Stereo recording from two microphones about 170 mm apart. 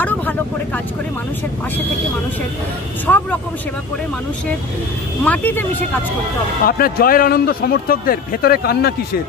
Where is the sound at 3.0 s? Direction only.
10° left (ahead or behind).